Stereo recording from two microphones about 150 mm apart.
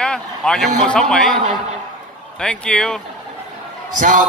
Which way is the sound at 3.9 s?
55° right (ahead or behind).